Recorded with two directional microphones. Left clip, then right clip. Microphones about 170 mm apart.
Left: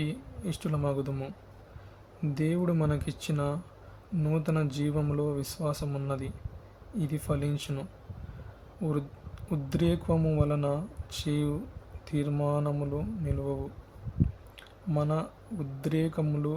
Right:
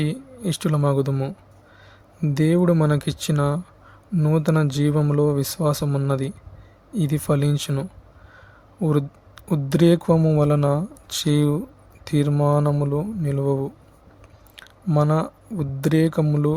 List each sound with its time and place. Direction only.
0.0 s speech: 55° right (ahead or behind)